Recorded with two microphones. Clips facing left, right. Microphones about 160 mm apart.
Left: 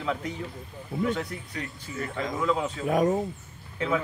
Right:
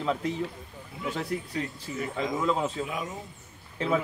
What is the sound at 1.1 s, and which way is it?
Speech, 30° right (ahead or behind).